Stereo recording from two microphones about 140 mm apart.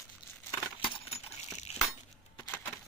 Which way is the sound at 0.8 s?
50° left (ahead or behind).